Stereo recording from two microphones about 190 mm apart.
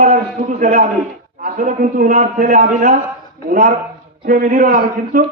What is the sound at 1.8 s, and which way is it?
Speech, 55° right (ahead or behind).